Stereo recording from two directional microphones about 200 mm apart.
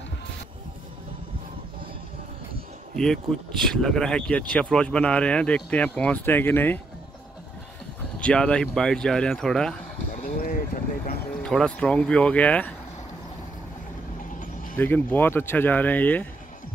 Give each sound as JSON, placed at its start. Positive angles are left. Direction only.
{"t": 3.0, "sound": "speech", "side_deg": 5}
{"t": 8.2, "sound": "speech", "side_deg": 5}
{"t": 10.3, "sound": "speech", "side_deg": 45}
{"t": 11.4, "sound": "speech", "side_deg": 5}
{"t": 14.4, "sound": "a sound", "side_deg": 45}
{"t": 14.8, "sound": "speech", "side_deg": 10}